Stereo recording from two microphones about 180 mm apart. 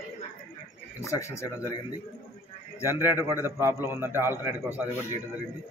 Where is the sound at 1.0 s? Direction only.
15° left (ahead or behind).